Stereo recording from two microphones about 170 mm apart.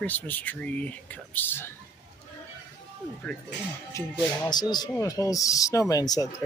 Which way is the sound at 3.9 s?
20° left (ahead or behind).